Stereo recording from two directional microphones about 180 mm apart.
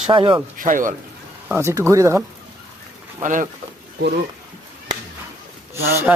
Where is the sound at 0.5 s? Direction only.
45° right (ahead or behind).